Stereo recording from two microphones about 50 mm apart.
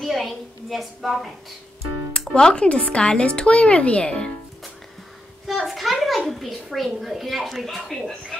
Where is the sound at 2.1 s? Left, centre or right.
Centre.